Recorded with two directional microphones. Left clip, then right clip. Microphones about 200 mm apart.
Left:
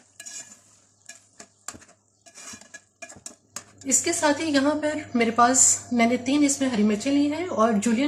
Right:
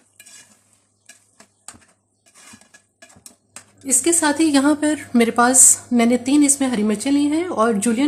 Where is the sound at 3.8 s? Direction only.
55° right (ahead or behind).